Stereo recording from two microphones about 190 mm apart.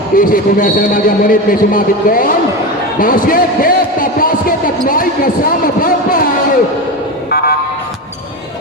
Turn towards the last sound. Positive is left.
turn(degrees=55)  # may be behind; listen again after turning